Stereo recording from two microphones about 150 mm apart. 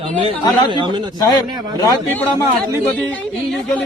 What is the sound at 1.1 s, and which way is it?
Speech, 25° left (ahead or behind).